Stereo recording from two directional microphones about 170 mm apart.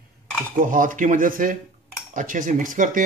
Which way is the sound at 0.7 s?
50° right (ahead or behind).